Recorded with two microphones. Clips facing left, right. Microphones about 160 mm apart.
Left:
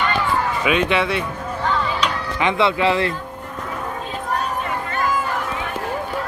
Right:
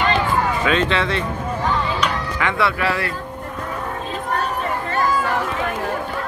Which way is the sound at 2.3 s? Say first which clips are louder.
Left 6 dB; 20° left (ahead or behind).